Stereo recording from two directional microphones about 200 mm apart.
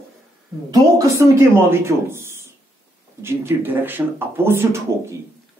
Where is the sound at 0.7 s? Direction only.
15° right (ahead or behind).